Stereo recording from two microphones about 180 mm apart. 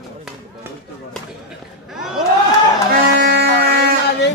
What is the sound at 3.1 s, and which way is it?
Music, 70° right (ahead or behind).